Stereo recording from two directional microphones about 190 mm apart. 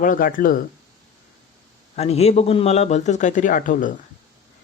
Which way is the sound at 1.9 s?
35° left (ahead or behind).